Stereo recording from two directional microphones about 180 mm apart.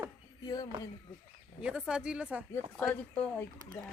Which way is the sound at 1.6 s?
5° right (ahead or behind).